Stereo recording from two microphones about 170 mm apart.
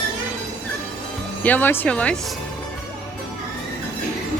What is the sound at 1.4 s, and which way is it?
Speech, 10° left (ahead or behind).